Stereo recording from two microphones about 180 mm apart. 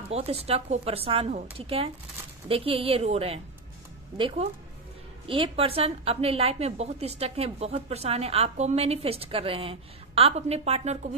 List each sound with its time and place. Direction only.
0.1 s a woman's voice: 35° right (ahead or behind)